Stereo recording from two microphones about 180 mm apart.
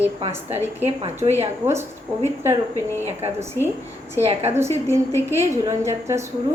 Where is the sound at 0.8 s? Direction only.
35° right (ahead or behind).